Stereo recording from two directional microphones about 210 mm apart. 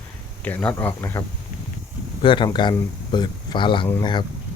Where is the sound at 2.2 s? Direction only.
25° left (ahead or behind).